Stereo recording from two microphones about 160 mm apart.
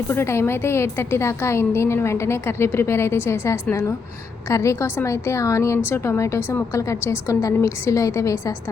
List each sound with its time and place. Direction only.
0.1 s a woman's voice: 15° left (ahead or behind)